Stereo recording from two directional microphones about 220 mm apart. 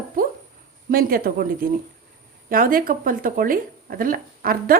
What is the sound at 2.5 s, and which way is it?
A woman's voice, 40° right (ahead or behind).